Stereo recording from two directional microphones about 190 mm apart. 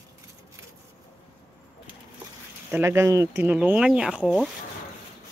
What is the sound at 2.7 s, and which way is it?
Speech, 15° right (ahead or behind).